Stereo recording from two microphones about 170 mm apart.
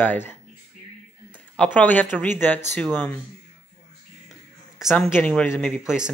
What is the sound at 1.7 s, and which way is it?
Speech, 10° left (ahead or behind).